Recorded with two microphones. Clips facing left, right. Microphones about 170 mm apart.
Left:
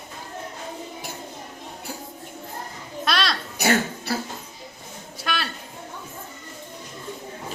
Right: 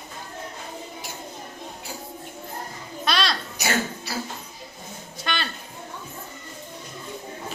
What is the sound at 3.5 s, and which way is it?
Laughter, 55° left (ahead or behind).